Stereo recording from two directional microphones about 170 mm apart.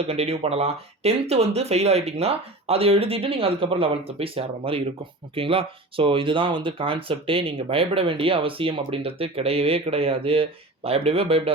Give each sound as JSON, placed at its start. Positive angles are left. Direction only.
{"t": 0.1, "sound": "speech", "side_deg": -35}